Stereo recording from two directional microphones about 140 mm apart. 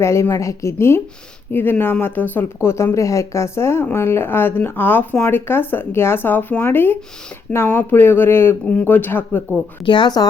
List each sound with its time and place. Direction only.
0.0 s a woman's voice: 20° left (ahead or behind)
9.8 s speech: 35° left (ahead or behind)